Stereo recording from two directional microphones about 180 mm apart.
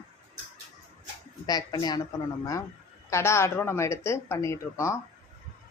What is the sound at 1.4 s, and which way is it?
Speech, 20° left (ahead or behind).